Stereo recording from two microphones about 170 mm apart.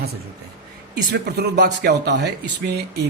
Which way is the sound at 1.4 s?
75° right (ahead or behind).